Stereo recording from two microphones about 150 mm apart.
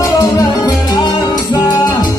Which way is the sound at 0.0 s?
25° left (ahead or behind).